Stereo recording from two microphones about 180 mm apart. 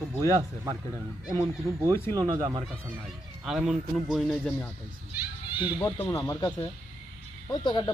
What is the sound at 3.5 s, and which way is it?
Speech, 5° right (ahead or behind).